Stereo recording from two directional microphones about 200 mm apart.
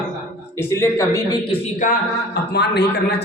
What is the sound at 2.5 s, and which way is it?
Speech, 55° left (ahead or behind).